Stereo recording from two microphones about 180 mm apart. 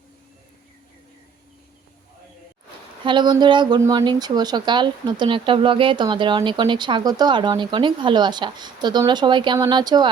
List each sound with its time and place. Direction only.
3.0 s speech: 25° right (ahead or behind)